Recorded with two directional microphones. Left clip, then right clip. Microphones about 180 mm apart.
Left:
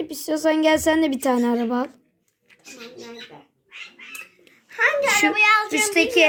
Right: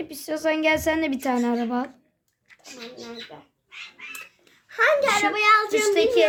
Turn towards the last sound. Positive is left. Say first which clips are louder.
# left 1 dB
turn(degrees=35)  # may be behind; listen again after turning